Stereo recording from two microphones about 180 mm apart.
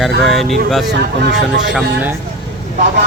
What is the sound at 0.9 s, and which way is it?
Speech, 70° right (ahead or behind).